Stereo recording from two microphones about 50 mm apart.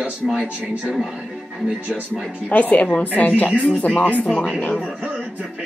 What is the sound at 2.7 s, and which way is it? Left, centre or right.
A woman's voice, left.